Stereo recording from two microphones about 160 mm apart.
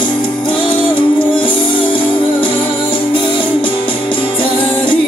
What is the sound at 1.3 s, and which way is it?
Music, 30° left (ahead or behind).